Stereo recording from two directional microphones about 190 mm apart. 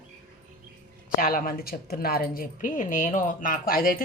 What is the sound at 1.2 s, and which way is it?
A woman's voice, 50° left (ahead or behind).